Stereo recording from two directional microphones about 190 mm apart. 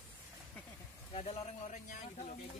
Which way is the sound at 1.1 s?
30° left (ahead or behind).